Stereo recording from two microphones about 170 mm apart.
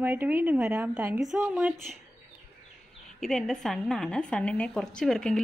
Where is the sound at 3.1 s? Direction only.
5° left (ahead or behind).